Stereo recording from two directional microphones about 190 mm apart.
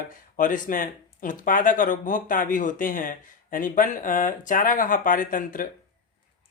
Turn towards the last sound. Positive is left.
turn(degrees=45)  # may be behind; listen again after turning